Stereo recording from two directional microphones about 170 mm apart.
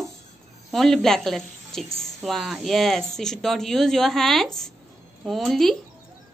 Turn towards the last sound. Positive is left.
turn(degrees=0)  # may be behind; listen again after turning